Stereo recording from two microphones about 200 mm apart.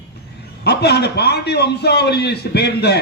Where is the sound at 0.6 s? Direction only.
55° left (ahead or behind).